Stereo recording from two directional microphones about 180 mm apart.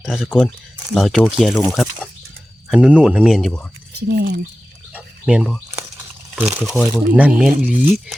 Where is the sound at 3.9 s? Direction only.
65° right (ahead or behind).